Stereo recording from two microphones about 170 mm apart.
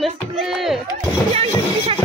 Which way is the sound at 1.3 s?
35° right (ahead or behind).